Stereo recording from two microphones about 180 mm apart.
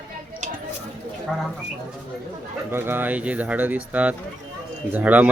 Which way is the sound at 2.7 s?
10° right (ahead or behind).